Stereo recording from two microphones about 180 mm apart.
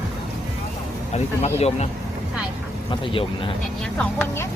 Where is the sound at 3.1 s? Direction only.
30° left (ahead or behind).